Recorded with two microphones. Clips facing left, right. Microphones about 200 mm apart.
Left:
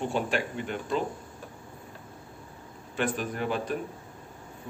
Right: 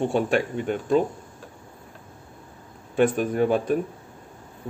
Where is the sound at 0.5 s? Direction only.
45° right (ahead or behind).